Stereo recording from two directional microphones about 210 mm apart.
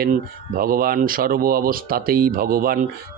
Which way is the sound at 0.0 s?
45° right (ahead or behind).